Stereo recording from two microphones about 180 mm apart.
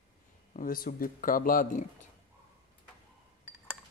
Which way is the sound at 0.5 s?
50° left (ahead or behind).